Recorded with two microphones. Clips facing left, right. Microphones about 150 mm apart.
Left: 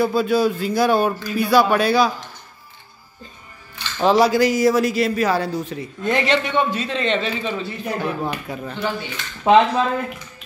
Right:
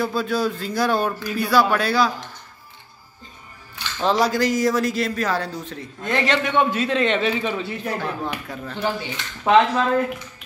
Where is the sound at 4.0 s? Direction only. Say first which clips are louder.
Left 4 dB; 10° left (ahead or behind).